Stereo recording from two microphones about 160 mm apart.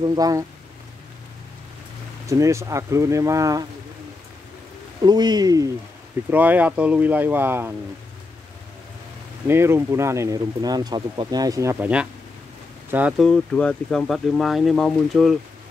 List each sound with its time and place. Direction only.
0.0 s speech: 25° right (ahead or behind)
2.2 s speech: 20° right (ahead or behind)
5.0 s speech: 25° right (ahead or behind)
6.3 s speech: 10° right (ahead or behind)
9.5 s speech: 15° right (ahead or behind)
13.2 s speech: 5° left (ahead or behind)